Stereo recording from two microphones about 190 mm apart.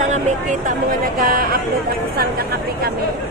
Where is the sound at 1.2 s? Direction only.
50° right (ahead or behind).